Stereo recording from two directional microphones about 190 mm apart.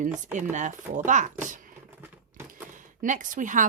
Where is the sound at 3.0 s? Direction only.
45° right (ahead or behind).